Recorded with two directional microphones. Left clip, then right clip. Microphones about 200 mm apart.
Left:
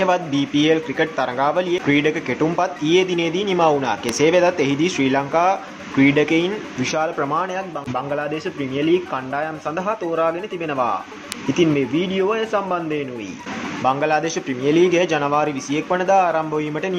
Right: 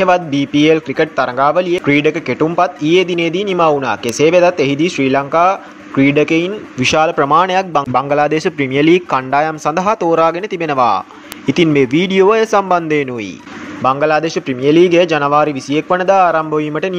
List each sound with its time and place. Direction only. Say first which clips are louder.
0.0 s a man's voice: right 6 dB; 25° right (ahead or behind)